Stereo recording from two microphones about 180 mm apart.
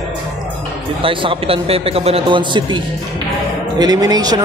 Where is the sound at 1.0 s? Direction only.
30° right (ahead or behind).